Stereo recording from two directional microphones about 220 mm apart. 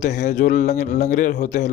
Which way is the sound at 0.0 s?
35° left (ahead or behind).